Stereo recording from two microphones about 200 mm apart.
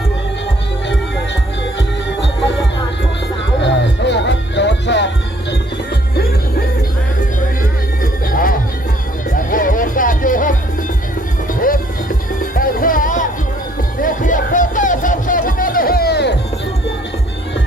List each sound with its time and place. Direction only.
3.6 s music: 60° left (ahead or behind)
8.0 s music: 45° left (ahead or behind)
11.6 s music: 45° left (ahead or behind)
14.0 s a sound: 40° left (ahead or behind)